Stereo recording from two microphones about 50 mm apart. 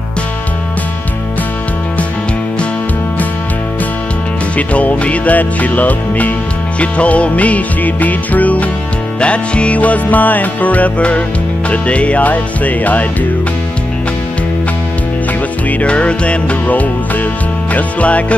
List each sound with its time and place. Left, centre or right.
4.6 s music: left
15.8 s music: left